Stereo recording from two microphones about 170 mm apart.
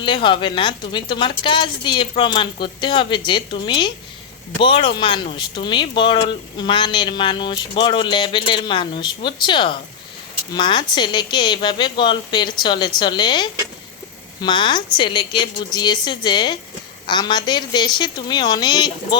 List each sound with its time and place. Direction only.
0.0 s a woman's voice: 30° left (ahead or behind)